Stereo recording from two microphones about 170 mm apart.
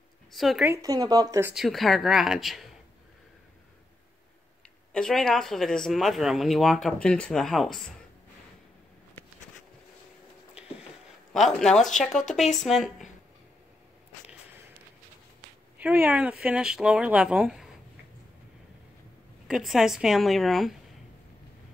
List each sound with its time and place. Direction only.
0.3 s speech: centre (ahead or behind)
0.7 s speech: 20° right (ahead or behind)
1.5 s speech: centre (ahead or behind)
4.9 s speech: 5° left (ahead or behind)
11.3 s speech: centre (ahead or behind)
15.8 s speech: 10° right (ahead or behind)
19.4 s speech: 5° right (ahead or behind)